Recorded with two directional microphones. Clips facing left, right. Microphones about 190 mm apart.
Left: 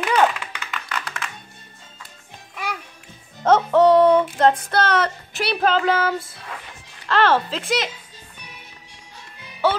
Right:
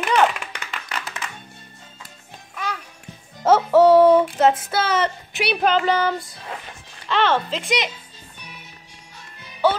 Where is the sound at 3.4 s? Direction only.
5° right (ahead or behind).